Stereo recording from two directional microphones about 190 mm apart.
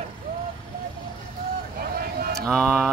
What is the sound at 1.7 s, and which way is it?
Vehicle, 50° right (ahead or behind).